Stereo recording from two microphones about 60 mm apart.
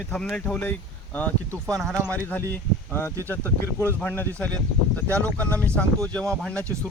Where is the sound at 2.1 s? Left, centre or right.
Left.